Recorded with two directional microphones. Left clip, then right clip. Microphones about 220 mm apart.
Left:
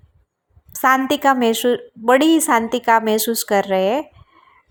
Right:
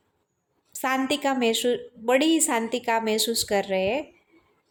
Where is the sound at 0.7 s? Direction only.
15° left (ahead or behind).